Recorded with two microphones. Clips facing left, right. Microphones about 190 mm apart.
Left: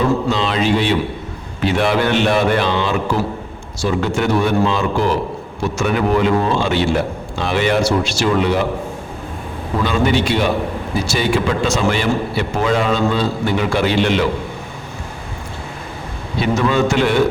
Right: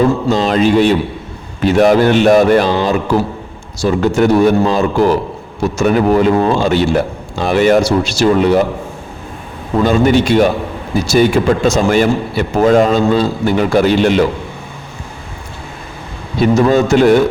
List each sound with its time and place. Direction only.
0.3 s a man's voice: 45° right (ahead or behind)
9.8 s a man's voice: 45° right (ahead or behind)
16.4 s speech: 40° right (ahead or behind)